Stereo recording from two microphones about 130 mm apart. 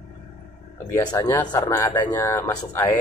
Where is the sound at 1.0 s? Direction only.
30° left (ahead or behind).